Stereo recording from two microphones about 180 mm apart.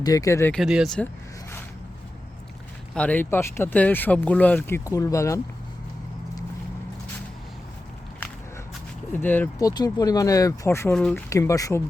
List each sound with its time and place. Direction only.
0.0 s speech: 20° left (ahead or behind)
0.6 s speech: centre (ahead or behind)
2.9 s speech: 5° left (ahead or behind)
9.1 s speech: 10° left (ahead or behind)